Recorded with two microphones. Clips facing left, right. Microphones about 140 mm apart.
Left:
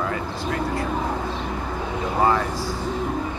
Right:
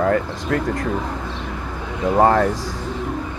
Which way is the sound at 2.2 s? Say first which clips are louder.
Right 5 dB; 55° right (ahead or behind).